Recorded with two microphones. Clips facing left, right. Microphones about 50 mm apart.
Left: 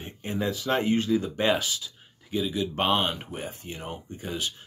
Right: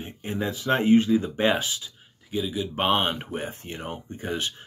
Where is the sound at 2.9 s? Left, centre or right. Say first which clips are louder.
Right 2 dB; right.